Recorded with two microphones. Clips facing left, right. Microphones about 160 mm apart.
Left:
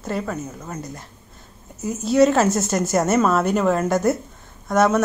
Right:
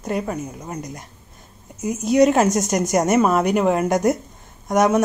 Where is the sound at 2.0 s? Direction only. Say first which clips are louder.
Right 1 dB; 15° right (ahead or behind).